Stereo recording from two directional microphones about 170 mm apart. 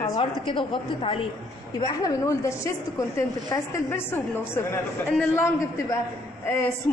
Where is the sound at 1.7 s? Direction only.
20° left (ahead or behind).